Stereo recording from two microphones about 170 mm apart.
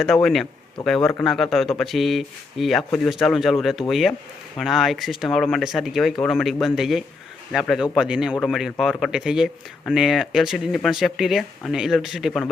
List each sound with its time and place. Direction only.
0.0 s speech: centre (ahead or behind)